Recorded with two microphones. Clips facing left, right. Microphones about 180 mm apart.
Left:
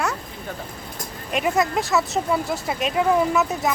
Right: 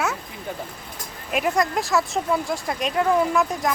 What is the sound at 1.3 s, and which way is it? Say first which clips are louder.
Speech: left 1 dB; centre (ahead or behind).